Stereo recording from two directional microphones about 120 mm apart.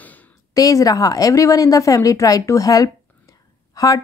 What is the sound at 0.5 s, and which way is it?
Speech, 30° left (ahead or behind).